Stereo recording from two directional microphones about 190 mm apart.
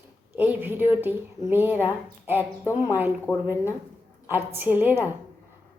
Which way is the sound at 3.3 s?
5° left (ahead or behind).